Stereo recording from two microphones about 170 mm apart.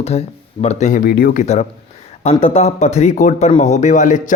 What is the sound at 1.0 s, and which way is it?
Speech, 65° left (ahead or behind).